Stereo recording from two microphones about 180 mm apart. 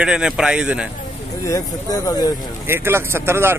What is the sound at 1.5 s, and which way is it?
Speech, 20° left (ahead or behind).